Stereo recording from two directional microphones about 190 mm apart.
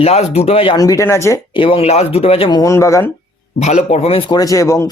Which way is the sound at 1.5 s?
30° left (ahead or behind).